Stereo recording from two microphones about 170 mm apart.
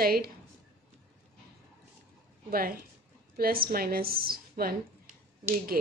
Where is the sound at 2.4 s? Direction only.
60° right (ahead or behind).